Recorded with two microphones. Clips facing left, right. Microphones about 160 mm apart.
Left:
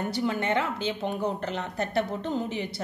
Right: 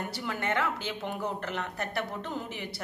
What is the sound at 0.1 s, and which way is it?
A woman's voice, 20° left (ahead or behind).